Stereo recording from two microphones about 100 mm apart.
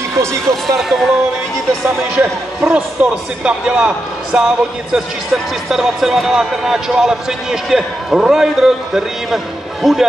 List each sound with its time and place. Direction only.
0.1 s speech: 30° right (ahead or behind)
0.7 s speech: centre (ahead or behind)
2.1 s speech: 15° right (ahead or behind)